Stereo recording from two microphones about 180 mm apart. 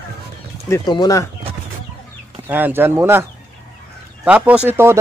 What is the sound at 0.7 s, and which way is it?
Speech, 25° left (ahead or behind).